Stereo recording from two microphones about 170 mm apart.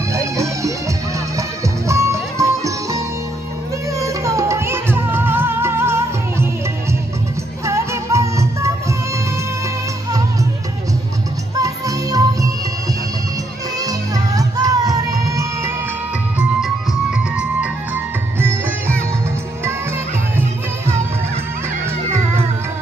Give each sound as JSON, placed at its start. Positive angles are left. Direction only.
{"t": 0.1, "sound": "music", "side_deg": -20}
{"t": 1.9, "sound": "music", "side_deg": -15}
{"t": 4.0, "sound": "music", "side_deg": -20}
{"t": 11.5, "sound": "music", "side_deg": -20}
{"t": 13.7, "sound": "music", "side_deg": -20}
{"t": 16.3, "sound": "music", "side_deg": -5}